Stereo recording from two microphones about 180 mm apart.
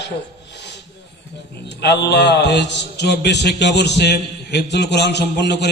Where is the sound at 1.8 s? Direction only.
65° left (ahead or behind).